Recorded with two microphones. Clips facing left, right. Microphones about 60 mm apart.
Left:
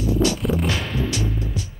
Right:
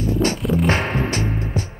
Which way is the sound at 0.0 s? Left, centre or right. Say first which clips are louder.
Even; right.